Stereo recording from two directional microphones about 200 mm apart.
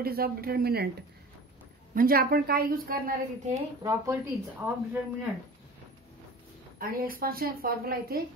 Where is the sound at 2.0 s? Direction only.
45° right (ahead or behind).